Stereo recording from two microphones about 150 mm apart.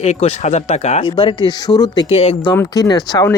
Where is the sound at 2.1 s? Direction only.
40° left (ahead or behind).